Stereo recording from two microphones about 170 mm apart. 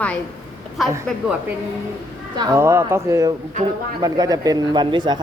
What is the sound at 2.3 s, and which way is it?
Speech, 20° right (ahead or behind).